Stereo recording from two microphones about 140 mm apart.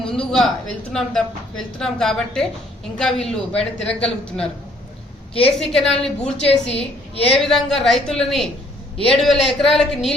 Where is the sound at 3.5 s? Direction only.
45° left (ahead or behind).